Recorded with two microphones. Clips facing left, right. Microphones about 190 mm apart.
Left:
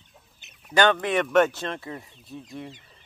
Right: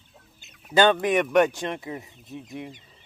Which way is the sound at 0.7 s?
15° right (ahead or behind).